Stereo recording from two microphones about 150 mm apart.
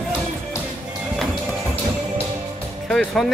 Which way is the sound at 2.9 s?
Centre (ahead or behind).